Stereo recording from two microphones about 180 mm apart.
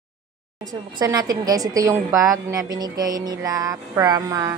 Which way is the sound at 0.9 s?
20° right (ahead or behind).